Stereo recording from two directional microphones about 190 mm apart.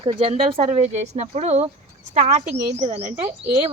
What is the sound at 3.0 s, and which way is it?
Speech, 15° right (ahead or behind).